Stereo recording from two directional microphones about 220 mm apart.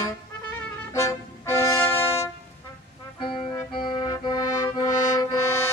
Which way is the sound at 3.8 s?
20° left (ahead or behind).